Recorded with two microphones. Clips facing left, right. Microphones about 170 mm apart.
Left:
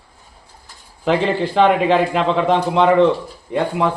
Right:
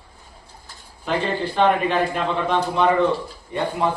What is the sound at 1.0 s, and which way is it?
A man's voice, 90° left.